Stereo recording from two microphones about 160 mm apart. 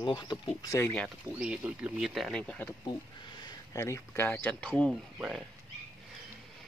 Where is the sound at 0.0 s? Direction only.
30° left (ahead or behind).